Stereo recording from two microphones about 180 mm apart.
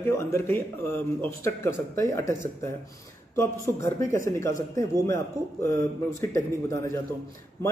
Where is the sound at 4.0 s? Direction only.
15° left (ahead or behind).